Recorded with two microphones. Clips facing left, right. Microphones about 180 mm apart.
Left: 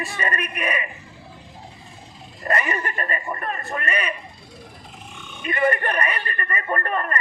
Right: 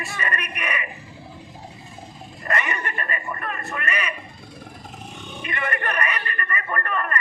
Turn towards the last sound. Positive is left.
turn(degrees=30)  # may be behind; listen again after turning